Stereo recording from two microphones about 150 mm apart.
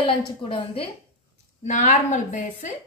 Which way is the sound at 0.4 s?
35° left (ahead or behind).